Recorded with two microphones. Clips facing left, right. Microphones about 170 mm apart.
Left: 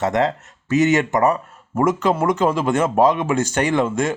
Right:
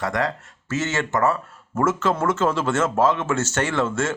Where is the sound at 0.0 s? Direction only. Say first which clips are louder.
Left 5 dB; 25° left (ahead or behind).